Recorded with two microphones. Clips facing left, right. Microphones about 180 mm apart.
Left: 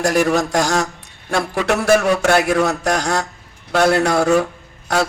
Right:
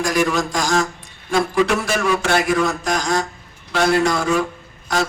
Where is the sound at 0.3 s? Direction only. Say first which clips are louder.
Left 2 dB; 65° left (ahead or behind).